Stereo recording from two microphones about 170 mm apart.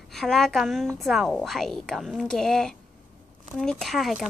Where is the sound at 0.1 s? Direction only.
Centre (ahead or behind).